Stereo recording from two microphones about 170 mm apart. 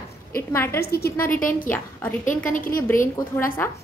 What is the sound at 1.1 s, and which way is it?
Speech, 10° left (ahead or behind).